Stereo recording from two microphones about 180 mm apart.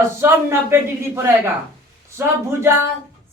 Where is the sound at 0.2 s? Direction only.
15° right (ahead or behind).